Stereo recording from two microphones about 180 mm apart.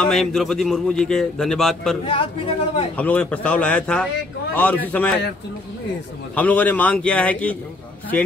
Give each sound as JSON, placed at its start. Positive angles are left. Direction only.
{"t": 0.0, "sound": "a man's voice", "side_deg": 0}
{"t": 2.0, "sound": "a man's voice", "side_deg": 30}
{"t": 3.0, "sound": "a man's voice", "side_deg": 10}
{"t": 6.3, "sound": "a man's voice", "side_deg": 10}